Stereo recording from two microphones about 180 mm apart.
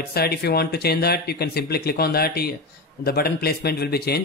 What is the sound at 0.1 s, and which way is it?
A man's voice, 60° left (ahead or behind).